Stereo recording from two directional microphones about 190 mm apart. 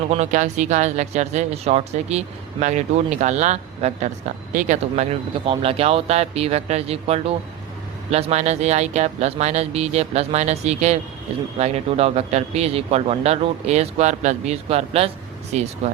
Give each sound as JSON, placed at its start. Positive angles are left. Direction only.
{"t": 0.1, "sound": "speech", "side_deg": -40}